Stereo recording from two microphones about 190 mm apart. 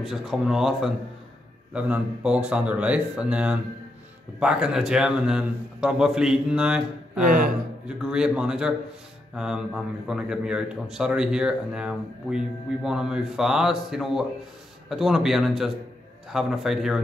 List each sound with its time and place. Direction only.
0.0 s a man's voice: centre (ahead or behind)
7.2 s a man's voice: 50° right (ahead or behind)
8.0 s a man's voice: 5° right (ahead or behind)